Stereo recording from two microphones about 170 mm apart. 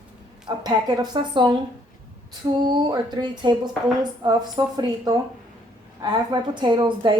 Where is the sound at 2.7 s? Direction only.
25° right (ahead or behind).